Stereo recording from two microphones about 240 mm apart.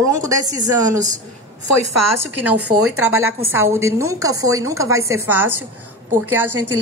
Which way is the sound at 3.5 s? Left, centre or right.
Centre.